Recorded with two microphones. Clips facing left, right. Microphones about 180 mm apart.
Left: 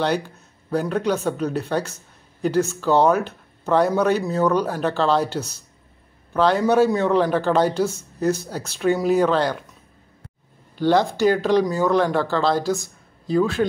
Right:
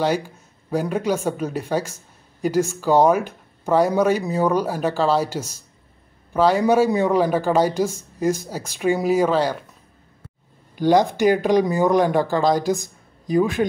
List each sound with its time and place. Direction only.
0.0 s speech: 10° right (ahead or behind)
10.8 s speech: 15° right (ahead or behind)